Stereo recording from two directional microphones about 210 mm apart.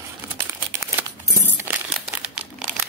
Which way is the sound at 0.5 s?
10° right (ahead or behind).